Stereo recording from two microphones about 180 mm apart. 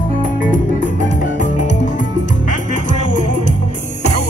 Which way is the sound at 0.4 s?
45° left (ahead or behind).